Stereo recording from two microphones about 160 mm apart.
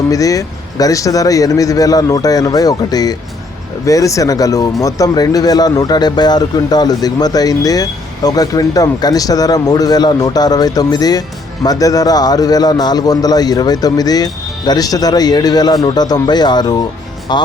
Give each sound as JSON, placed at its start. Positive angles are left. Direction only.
{"t": 0.1, "sound": "speech", "side_deg": 20}